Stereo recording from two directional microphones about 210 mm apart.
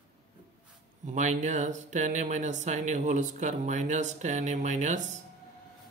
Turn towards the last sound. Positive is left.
turn(degrees=-35)  # may be behind; listen again after turning